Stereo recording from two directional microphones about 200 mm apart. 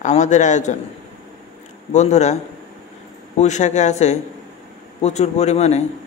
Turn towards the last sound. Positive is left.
turn(degrees=35)  # may be behind; listen again after turning